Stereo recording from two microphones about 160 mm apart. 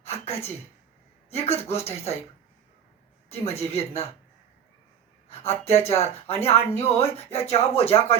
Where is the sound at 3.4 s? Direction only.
40° left (ahead or behind).